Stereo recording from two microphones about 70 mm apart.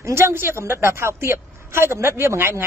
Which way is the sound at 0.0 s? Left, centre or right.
Right.